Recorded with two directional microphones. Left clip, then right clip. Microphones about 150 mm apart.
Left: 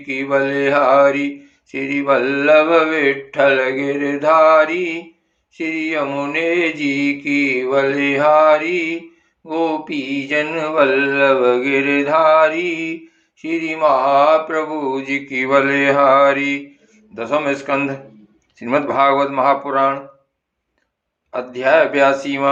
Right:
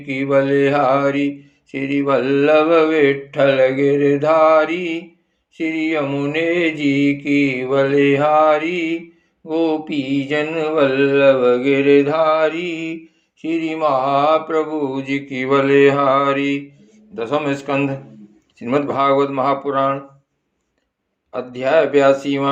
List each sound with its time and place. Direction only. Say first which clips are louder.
0.1 s mantra: right 1 dB; 40° right (ahead or behind)
18.6 s speech: left 2 dB; 25° right (ahead or behind)
21.2 s speech: left 3 dB; 30° right (ahead or behind)